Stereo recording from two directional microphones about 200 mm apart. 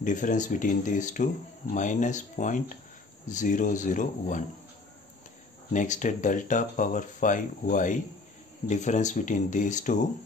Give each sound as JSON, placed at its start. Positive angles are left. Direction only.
{"t": 0.0, "sound": "speech", "side_deg": 40}
{"t": 5.7, "sound": "speech", "side_deg": 40}